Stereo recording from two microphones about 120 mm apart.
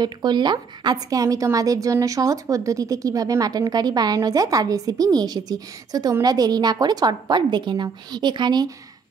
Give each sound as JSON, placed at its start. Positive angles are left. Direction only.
{"t": 0.0, "sound": "a woman's voice", "side_deg": -35}